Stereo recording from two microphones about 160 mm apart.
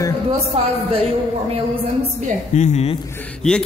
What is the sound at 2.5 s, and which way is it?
Speech, 50° left (ahead or behind).